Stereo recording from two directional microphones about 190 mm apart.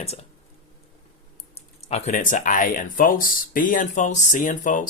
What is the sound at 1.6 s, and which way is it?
Speech, 35° left (ahead or behind).